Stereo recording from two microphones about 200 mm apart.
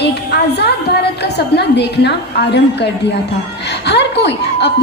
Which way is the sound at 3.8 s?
60° left (ahead or behind).